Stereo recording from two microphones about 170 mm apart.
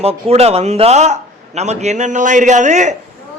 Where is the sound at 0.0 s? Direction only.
35° right (ahead or behind).